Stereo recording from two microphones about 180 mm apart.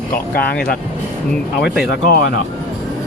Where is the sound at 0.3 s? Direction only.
55° left (ahead or behind).